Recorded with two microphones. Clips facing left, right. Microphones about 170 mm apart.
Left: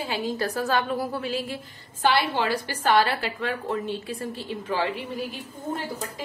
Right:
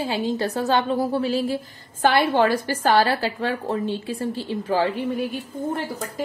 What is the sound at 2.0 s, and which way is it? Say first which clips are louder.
A woman's voice: right 5 dB; 50° right (ahead or behind).